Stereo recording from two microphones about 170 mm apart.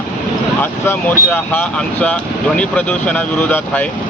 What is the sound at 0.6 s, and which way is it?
Speech, 10° left (ahead or behind).